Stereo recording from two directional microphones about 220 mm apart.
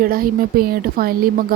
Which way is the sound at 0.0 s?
40° right (ahead or behind).